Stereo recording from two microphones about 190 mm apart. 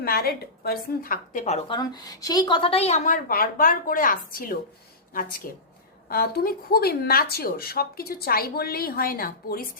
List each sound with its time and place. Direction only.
0.0 s a woman's voice: 50° left (ahead or behind)